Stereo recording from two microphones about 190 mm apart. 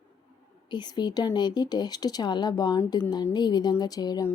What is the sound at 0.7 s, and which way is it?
Speech, 25° left (ahead or behind).